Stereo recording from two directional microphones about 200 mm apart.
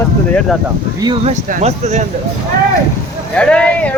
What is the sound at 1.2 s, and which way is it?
Speech, 35° right (ahead or behind).